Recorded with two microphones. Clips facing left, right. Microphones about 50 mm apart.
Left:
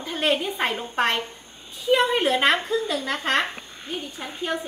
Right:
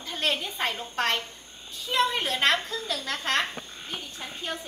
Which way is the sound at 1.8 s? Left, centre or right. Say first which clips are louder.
Left 6 dB; centre.